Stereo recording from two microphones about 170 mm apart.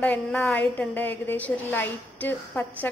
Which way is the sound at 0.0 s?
10° left (ahead or behind).